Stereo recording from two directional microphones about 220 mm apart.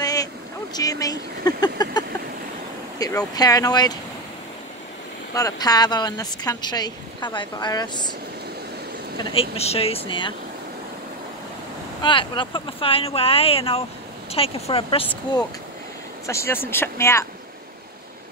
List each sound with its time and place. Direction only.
0.0 s boat: 15° left (ahead or behind)
0.7 s vehicle: 15° left (ahead or behind)
3.0 s speech: 15° left (ahead or behind)
5.3 s a woman's voice: 15° left (ahead or behind)
9.2 s speech: 25° left (ahead or behind)
12.0 s speech: 20° left (ahead or behind)
16.3 s a woman's voice: 10° left (ahead or behind)